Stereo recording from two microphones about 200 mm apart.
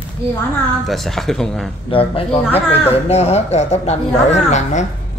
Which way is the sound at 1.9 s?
30° left (ahead or behind).